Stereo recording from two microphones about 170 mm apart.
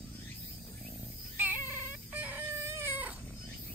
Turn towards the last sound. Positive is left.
turn(degrees=-15)  # may be behind; listen again after turning